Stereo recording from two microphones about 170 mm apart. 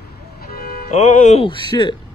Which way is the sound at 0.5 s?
60° left (ahead or behind).